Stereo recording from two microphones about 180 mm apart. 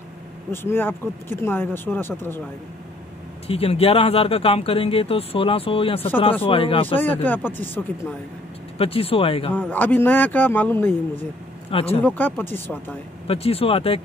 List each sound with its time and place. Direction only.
0.5 s speech: 10° left (ahead or behind)
3.4 s speech: 35° left (ahead or behind)
7.0 s speech: 10° left (ahead or behind)
8.7 s speech: 30° left (ahead or behind)
9.5 s speech: 10° left (ahead or behind)
11.7 s speech: 35° left (ahead or behind)
12.0 s speech: 10° left (ahead or behind)
13.3 s speech: 35° left (ahead or behind)